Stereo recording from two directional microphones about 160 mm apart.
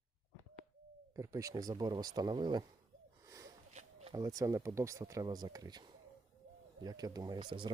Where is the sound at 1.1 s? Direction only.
20° right (ahead or behind).